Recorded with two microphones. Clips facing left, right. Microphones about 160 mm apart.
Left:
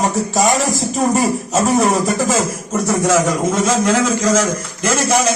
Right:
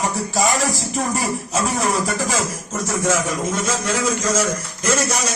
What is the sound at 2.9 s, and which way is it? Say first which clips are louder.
Speech: left 5 dB; 80° left.